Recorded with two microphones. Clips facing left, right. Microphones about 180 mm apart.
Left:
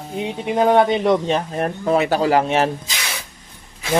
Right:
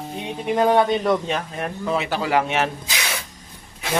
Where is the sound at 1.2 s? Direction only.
35° left (ahead or behind).